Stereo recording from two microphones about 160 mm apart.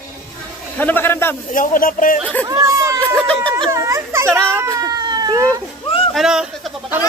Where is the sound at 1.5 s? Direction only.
55° left (ahead or behind).